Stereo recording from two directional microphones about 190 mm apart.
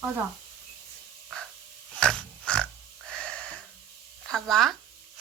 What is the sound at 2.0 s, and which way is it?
Pig, 5° left (ahead or behind).